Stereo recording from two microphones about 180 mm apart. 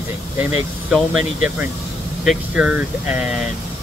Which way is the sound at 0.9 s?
5° right (ahead or behind).